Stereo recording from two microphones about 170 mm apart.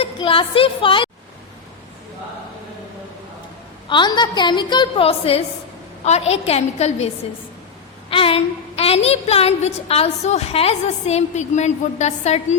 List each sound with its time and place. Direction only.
0.0 s a woman's voice: 30° left (ahead or behind)
3.8 s a woman's voice: 25° left (ahead or behind)
8.1 s a woman's voice: 35° left (ahead or behind)